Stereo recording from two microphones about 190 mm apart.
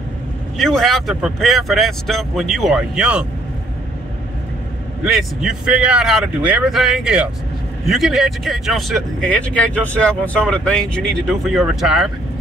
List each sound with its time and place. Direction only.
0.6 s speech: centre (ahead or behind)
5.0 s speech: 5° right (ahead or behind)